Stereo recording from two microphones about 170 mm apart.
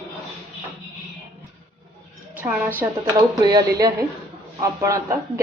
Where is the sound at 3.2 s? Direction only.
25° right (ahead or behind).